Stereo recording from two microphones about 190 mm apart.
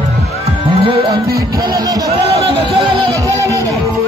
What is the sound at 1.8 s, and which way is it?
Speech, 20° right (ahead or behind).